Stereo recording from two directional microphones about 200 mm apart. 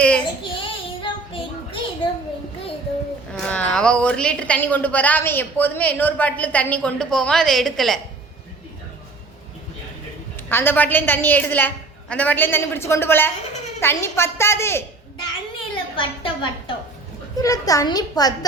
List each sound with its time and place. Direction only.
0.5 s child singing: 25° left (ahead or behind)
3.3 s a woman's voice: 5° left (ahead or behind)
10.5 s a woman's voice: 10° left (ahead or behind)
15.5 s a sound: 25° left (ahead or behind)
17.4 s a child's voice: 15° left (ahead or behind)